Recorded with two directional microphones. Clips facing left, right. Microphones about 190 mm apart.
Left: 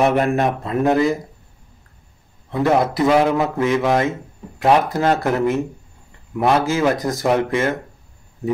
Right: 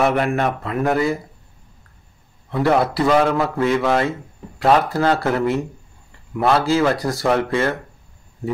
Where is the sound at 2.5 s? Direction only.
15° left (ahead or behind).